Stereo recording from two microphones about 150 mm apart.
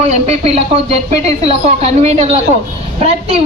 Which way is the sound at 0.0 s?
45° right (ahead or behind).